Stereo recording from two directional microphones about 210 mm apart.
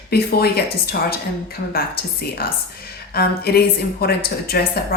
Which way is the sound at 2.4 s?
45° left (ahead or behind).